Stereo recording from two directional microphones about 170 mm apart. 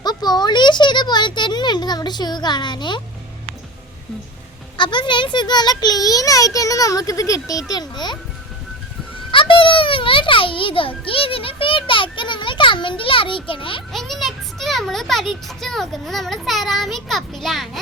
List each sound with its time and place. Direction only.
0.0 s a child's voice: 25° left (ahead or behind)
4.8 s a child's voice: 25° left (ahead or behind)
9.3 s a child's voice: 30° left (ahead or behind)
13.9 s a child's voice: centre (ahead or behind)